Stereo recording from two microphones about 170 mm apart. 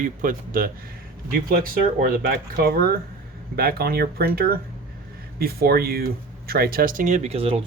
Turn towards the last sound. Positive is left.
turn(degrees=-35)  # may be behind; listen again after turning